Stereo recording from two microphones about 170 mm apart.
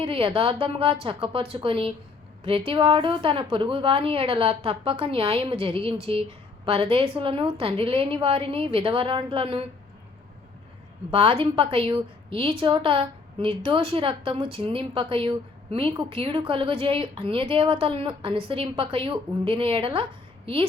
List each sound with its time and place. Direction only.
0.0 s a woman's voice: 30° right (ahead or behind)
11.1 s a woman's voice: 35° right (ahead or behind)